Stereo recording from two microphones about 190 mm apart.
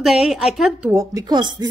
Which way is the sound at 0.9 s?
15° right (ahead or behind).